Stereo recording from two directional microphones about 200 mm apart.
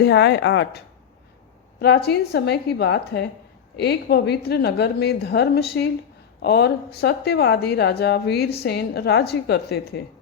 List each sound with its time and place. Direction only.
0.0 s a woman's voice: 60° left (ahead or behind)
1.8 s a woman's voice: 55° left (ahead or behind)